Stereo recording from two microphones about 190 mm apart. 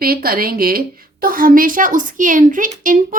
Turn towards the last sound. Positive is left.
turn(degrees=-45)  # may be behind; listen again after turning